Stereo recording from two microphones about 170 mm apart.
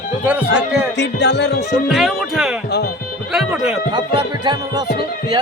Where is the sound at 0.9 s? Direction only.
90° left.